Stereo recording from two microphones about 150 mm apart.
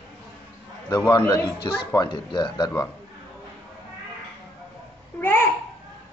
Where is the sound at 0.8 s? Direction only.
20° left (ahead or behind).